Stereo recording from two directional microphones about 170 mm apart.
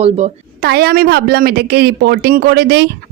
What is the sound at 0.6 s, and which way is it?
Speech, 70° right (ahead or behind).